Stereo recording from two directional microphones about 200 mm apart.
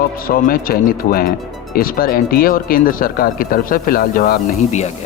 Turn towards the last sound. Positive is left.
turn(degrees=35)  # may be behind; listen again after turning